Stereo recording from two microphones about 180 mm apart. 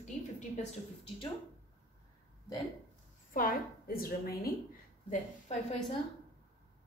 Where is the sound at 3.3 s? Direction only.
55° left (ahead or behind).